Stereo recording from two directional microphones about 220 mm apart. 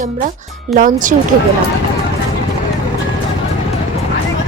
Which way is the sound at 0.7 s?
35° right (ahead or behind).